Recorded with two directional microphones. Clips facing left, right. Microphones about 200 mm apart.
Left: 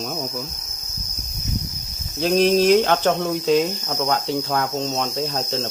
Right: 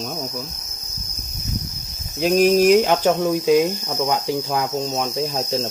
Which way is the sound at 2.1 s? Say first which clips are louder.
Right 2 dB; 5° right (ahead or behind).